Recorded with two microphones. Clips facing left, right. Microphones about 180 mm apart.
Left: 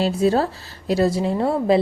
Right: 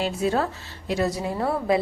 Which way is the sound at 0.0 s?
35° left (ahead or behind).